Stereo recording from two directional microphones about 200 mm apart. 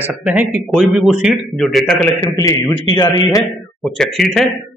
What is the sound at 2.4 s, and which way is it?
Speech, 15° left (ahead or behind).